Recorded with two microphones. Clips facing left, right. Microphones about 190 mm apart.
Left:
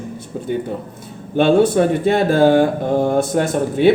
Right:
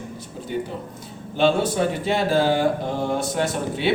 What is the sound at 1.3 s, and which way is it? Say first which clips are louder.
Speech: left 7 dB; 55° left (ahead or behind).